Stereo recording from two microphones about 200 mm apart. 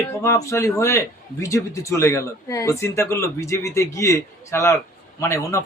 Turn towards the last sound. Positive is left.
turn(degrees=15)  # may be behind; listen again after turning